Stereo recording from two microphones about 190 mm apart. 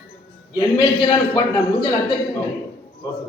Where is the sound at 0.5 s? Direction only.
25° left (ahead or behind).